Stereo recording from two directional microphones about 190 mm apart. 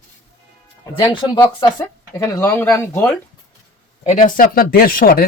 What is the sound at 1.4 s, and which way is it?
Speech, 15° left (ahead or behind).